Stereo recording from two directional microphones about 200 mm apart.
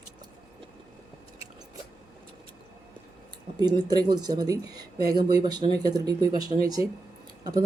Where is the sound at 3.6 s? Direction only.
20° right (ahead or behind).